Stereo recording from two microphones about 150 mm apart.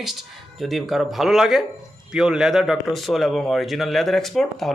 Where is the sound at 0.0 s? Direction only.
Centre (ahead or behind).